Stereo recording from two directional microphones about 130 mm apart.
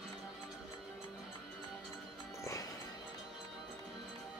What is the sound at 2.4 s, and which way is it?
Music, 25° left (ahead or behind).